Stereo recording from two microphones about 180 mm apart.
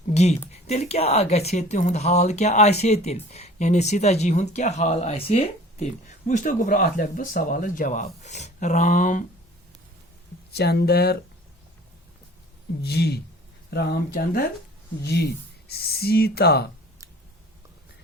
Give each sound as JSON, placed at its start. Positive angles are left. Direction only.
{"t": 0.1, "sound": "a sound", "side_deg": 40}
{"t": 0.7, "sound": "speech", "side_deg": 35}
{"t": 10.5, "sound": "speech", "side_deg": 65}
{"t": 12.8, "sound": "speech", "side_deg": 65}
{"t": 15.0, "sound": "speech", "side_deg": 65}